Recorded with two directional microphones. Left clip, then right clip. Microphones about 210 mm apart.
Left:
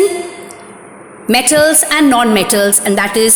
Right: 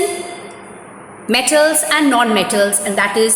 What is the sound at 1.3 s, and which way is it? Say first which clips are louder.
A woman's voice: left 3 dB; 40° left (ahead or behind).